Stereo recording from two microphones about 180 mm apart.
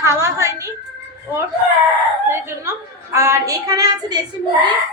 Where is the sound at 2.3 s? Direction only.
15° right (ahead or behind).